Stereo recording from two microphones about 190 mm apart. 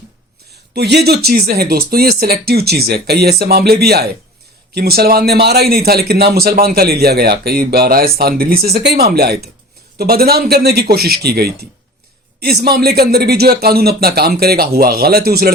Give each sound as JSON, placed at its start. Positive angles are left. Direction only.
{"t": 0.7, "sound": "speech", "side_deg": -60}